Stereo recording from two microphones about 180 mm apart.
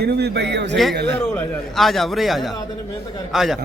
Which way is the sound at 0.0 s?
65° right (ahead or behind).